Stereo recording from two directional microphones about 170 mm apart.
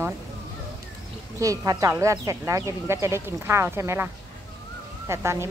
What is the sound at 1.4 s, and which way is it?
Speech, 20° right (ahead or behind).